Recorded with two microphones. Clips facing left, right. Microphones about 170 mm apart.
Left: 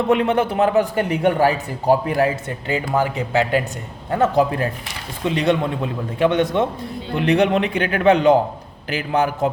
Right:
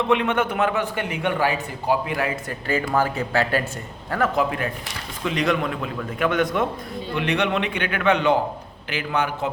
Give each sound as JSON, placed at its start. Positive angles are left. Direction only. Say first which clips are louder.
{"t": 0.1, "sound": "a man's voice", "louder": "left 5 dB", "side_deg": 35}
{"t": 4.1, "sound": "a man's voice", "louder": "left 5 dB", "side_deg": 30}
{"t": 7.2, "sound": "a man's voice", "louder": "left 6 dB", "side_deg": 35}